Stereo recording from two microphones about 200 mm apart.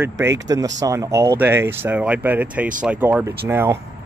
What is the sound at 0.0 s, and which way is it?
Speech, 10° right (ahead or behind).